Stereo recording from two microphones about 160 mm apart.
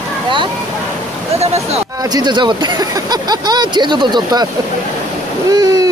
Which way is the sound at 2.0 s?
25° right (ahead or behind).